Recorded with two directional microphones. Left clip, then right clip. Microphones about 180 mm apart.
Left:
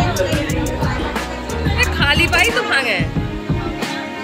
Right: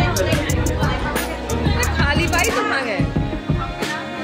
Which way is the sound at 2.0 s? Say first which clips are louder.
Left 5 dB; 5° left (ahead or behind).